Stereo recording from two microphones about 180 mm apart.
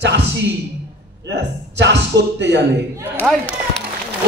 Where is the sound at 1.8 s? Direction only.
75° right (ahead or behind).